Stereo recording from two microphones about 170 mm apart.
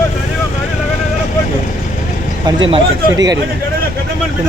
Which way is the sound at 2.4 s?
20° right (ahead or behind).